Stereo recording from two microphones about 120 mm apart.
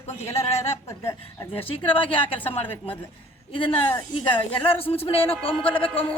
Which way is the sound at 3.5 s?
45° left (ahead or behind).